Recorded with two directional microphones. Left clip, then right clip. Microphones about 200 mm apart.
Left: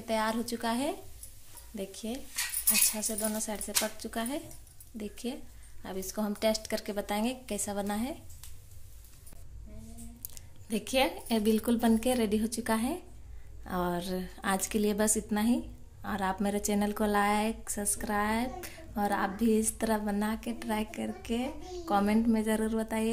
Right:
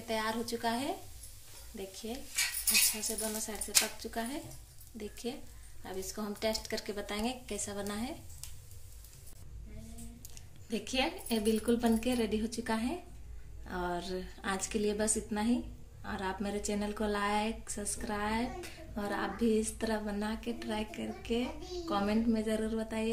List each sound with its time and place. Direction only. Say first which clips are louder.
0.0 s a woman's voice: left 4 dB; 50° left (ahead or behind)
10.2 s a woman's voice: left 3 dB; 55° left (ahead or behind)